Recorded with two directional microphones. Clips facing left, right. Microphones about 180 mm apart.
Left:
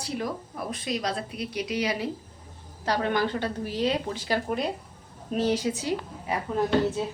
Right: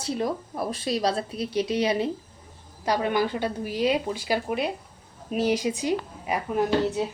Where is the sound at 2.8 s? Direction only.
15° right (ahead or behind).